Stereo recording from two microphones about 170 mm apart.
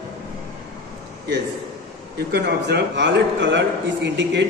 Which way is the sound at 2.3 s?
80° right.